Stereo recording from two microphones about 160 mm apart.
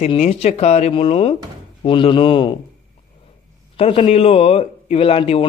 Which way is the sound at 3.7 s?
40° left (ahead or behind).